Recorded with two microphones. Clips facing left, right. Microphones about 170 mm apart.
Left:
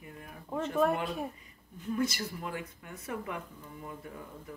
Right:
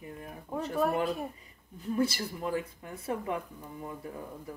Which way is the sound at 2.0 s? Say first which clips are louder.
Right 3 dB; 30° right (ahead or behind).